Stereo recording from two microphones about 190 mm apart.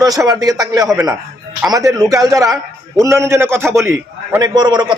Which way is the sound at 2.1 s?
15° right (ahead or behind).